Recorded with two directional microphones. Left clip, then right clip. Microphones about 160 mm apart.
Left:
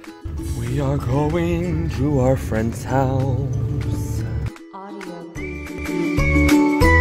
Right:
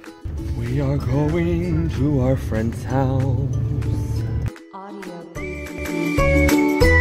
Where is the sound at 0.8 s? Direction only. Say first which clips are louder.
Left 2 dB; 15° left (ahead or behind).